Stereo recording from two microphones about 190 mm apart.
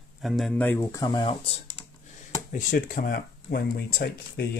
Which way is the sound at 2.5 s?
45° left (ahead or behind).